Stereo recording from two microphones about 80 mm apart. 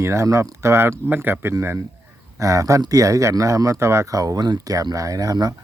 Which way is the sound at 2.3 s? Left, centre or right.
Right.